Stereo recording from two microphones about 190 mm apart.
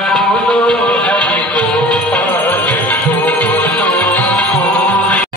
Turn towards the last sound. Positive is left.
turn(degrees=5)  # may be behind; listen again after turning